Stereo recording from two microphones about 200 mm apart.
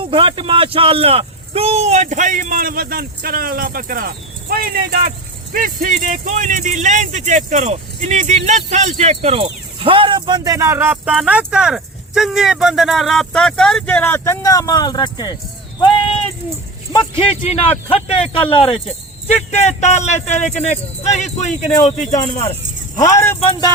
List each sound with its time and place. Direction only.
0.0 s speech: 25° right (ahead or behind); by 15.4 s 20° left (ahead or behind)
16.9 s speech: 30° left (ahead or behind)
23.0 s speech: 15° left (ahead or behind)